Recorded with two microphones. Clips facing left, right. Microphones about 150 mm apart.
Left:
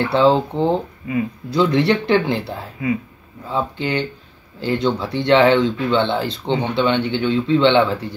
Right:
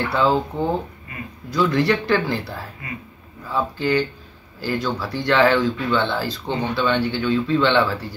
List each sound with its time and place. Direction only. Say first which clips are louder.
0.0 s speech: left 4 dB; 25° left (ahead or behind)